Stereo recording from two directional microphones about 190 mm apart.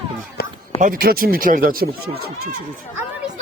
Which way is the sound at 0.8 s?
45° right (ahead or behind).